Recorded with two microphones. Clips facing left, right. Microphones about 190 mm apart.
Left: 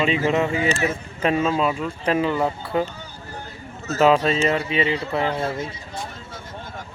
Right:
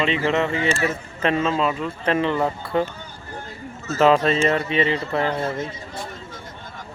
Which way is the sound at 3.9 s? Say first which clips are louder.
Even; 5° left (ahead or behind).